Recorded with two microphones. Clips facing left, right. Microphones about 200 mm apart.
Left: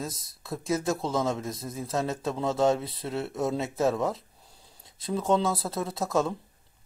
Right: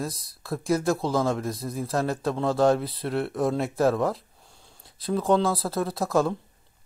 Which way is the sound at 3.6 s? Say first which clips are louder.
Right 3 dB; 20° left (ahead or behind).